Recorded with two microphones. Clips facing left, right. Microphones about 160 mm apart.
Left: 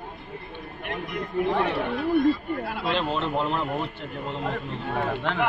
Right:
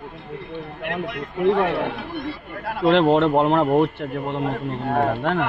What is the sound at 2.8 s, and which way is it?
A man's voice, 80° right.